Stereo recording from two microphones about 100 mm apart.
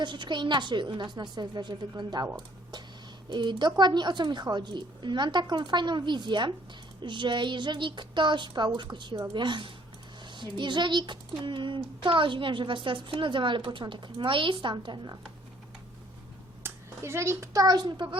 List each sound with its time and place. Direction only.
0.0 s a woman's voice: 50° right (ahead or behind)
3.2 s a woman's voice: 50° right (ahead or behind)
16.6 s a child's voice: 25° right (ahead or behind); by 18.2 s 50° right (ahead or behind)